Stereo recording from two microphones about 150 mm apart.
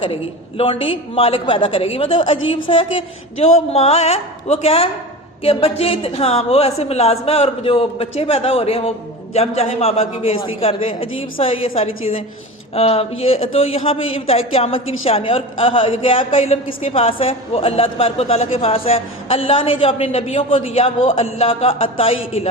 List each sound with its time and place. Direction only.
0.0 s speech: 35° left (ahead or behind)